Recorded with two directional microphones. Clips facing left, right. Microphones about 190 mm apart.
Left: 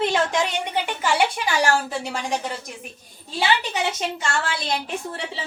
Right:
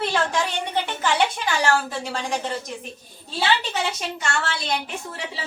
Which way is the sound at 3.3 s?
15° left (ahead or behind).